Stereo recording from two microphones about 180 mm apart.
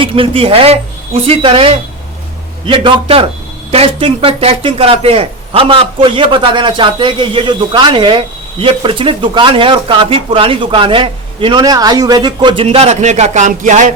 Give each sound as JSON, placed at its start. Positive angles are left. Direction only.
{"t": 0.0, "sound": "a man's voice", "side_deg": -30}